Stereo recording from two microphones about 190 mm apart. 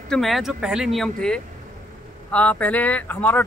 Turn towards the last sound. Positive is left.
turn(degrees=10)  # may be behind; listen again after turning